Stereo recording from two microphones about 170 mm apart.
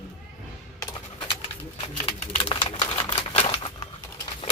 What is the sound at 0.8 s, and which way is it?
Music, 25° left (ahead or behind).